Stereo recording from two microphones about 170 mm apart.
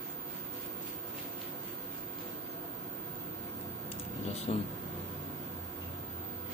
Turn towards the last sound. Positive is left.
turn(degrees=35)  # may be behind; listen again after turning